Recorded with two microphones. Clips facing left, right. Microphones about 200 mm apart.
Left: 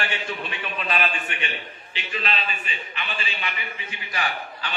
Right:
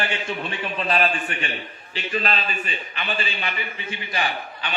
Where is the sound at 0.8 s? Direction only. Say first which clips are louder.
Right 4 dB; 35° right (ahead or behind).